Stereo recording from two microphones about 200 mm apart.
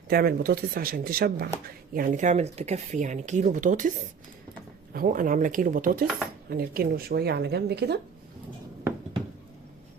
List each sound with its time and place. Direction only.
0.1 s speech: 50° right (ahead or behind)
4.9 s speech: 40° right (ahead or behind)